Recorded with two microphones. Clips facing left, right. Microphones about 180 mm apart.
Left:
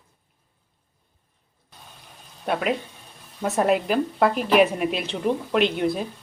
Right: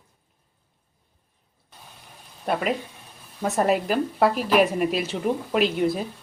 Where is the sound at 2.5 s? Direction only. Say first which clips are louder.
Even; centre (ahead or behind).